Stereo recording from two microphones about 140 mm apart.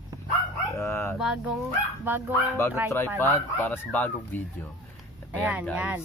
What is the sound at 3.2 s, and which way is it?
Speech, 20° left (ahead or behind).